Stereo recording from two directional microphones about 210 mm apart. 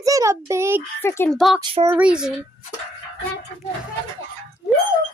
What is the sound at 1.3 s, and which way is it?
Speech, centre (ahead or behind).